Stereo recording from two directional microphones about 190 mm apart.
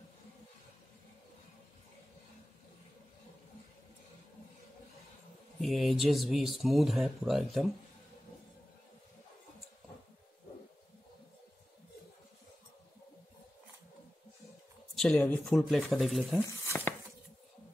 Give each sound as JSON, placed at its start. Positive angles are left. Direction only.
{"t": 5.6, "sound": "speech", "side_deg": 0}
{"t": 15.0, "sound": "speech", "side_deg": 5}
{"t": 16.4, "sound": "a sound", "side_deg": 10}